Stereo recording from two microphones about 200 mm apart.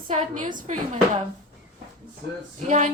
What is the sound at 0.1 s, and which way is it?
Speech, 35° right (ahead or behind).